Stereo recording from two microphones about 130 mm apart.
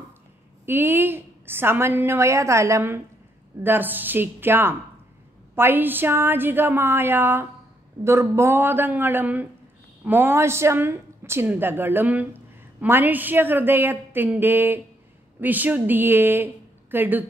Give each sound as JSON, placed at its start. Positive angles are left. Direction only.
{"t": 0.7, "sound": "a woman's voice", "side_deg": -15}